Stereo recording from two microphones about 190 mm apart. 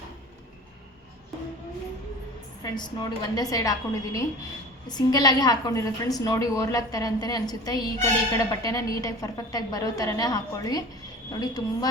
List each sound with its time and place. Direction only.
2.6 s a woman's voice: 20° left (ahead or behind)